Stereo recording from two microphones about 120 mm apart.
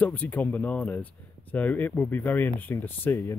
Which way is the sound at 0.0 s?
15° left (ahead or behind).